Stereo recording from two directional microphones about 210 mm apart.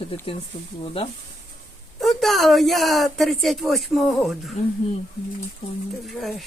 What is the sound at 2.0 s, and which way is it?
Speech, centre (ahead or behind).